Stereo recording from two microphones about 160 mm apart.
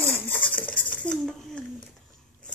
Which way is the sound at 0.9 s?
5° left (ahead or behind).